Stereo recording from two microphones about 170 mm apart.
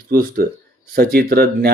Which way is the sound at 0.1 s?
60° right (ahead or behind).